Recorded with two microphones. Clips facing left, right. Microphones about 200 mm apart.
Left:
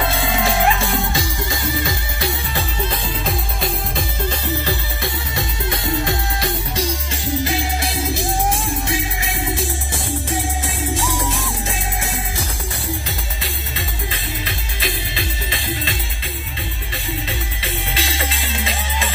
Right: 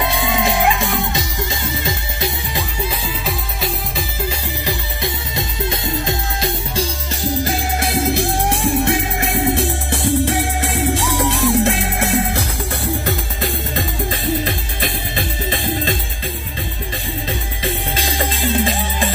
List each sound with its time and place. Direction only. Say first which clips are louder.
0.0 s music: right 2 dB; 20° right (ahead or behind)
2.8 s music: left 1 dB; 5° right (ahead or behind); by 6.8 s 20° right (ahead or behind)
7.4 s music: right 2 dB; 50° right (ahead or behind)
13.0 s music: right 8 dB; 50° right (ahead or behind)
18.1 s music: right 7 dB; 45° right (ahead or behind)